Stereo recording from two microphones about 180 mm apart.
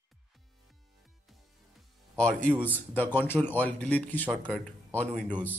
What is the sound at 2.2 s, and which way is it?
A man's voice, 5° left (ahead or behind).